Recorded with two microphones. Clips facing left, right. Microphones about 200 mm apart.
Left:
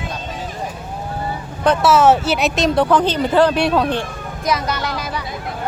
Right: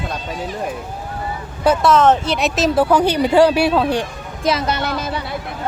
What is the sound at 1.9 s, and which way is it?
Speech, 10° left (ahead or behind).